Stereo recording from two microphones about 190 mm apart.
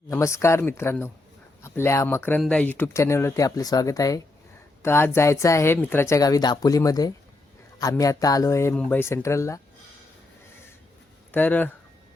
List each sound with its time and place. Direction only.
0.1 s speech: 15° left (ahead or behind)
11.3 s speech: 10° left (ahead or behind)